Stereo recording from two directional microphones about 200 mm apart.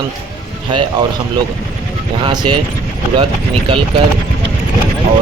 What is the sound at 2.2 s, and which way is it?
Speech, 20° right (ahead or behind).